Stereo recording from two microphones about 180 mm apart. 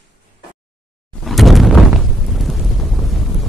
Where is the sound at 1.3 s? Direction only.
Centre (ahead or behind).